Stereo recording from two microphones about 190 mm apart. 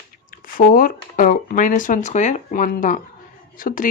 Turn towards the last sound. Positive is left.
turn(degrees=45)  # may be behind; listen again after turning